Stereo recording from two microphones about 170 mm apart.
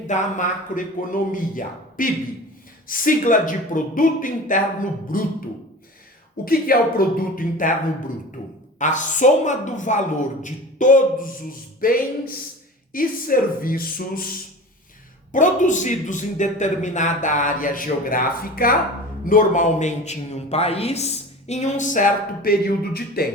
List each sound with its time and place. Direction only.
0.1 s a man's voice: 50° left (ahead or behind)
6.4 s a man's voice: 60° left (ahead or behind)
15.3 s a man's voice: 50° left (ahead or behind); by 23.3 s 65° left (ahead or behind)